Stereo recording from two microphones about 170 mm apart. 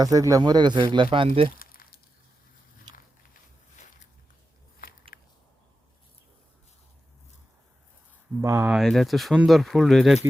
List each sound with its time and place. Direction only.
0.0 s speech: 20° right (ahead or behind)
1.5 s crumpling: 60° left (ahead or behind)
3.8 s a sound: 45° left (ahead or behind)
5.1 s a sound: 60° left (ahead or behind)
8.4 s speech: 15° right (ahead or behind)
8.7 s speech: centre (ahead or behind)